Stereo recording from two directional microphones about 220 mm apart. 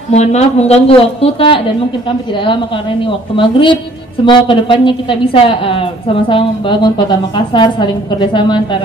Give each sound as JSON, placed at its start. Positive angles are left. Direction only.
{"t": 0.1, "sound": "a woman's voice", "side_deg": 30}